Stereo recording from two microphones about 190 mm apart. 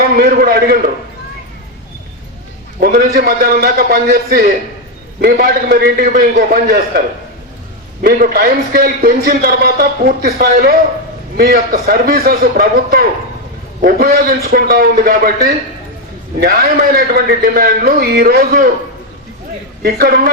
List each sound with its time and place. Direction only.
0.0 s a man's voice: 50° right (ahead or behind)
2.8 s a man's voice: 50° right (ahead or behind)
8.0 s a man's voice: 50° right (ahead or behind)
19.8 s a man's voice: 50° right (ahead or behind)